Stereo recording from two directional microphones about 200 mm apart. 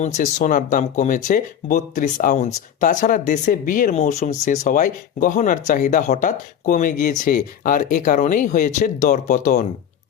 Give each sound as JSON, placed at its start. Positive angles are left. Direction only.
{"t": 0.0, "sound": "speech", "side_deg": 40}